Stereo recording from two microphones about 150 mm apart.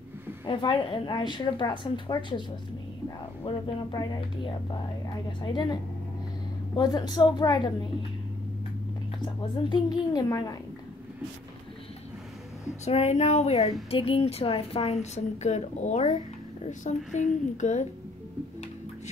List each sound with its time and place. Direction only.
0.5 s a woman's voice: 30° left (ahead or behind)
3.4 s a woman's voice: 30° left (ahead or behind)
9.2 s a woman's voice: 30° left (ahead or behind)
12.8 s a woman's voice: 45° left (ahead or behind)